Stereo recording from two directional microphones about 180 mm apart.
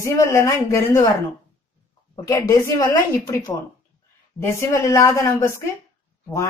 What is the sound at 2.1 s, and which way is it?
A woman's voice, 20° left (ahead or behind).